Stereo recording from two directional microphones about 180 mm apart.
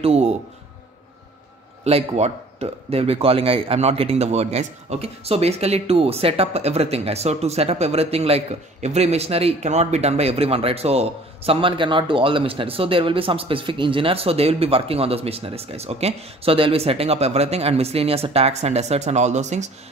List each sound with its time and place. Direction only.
0.0 s speech: 35° right (ahead or behind)
1.9 s speech: 35° right (ahead or behind)